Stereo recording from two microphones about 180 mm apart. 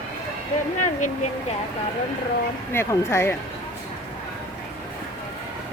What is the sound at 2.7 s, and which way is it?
Speech, 15° left (ahead or behind).